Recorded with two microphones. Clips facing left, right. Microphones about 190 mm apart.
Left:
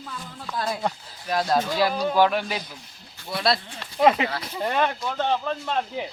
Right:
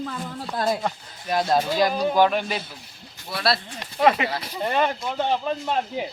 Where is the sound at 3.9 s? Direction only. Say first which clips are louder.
Even; centre (ahead or behind).